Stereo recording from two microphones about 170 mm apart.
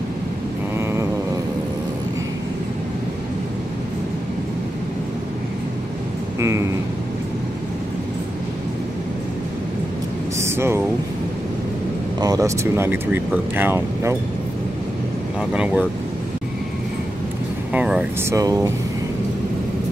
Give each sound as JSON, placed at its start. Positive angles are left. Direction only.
{"t": 10.4, "sound": "a sound", "side_deg": -15}
{"t": 12.2, "sound": "speech", "side_deg": -20}
{"t": 15.5, "sound": "speech", "side_deg": -10}
{"t": 17.7, "sound": "speech", "side_deg": -5}
{"t": 18.3, "sound": "speech", "side_deg": -20}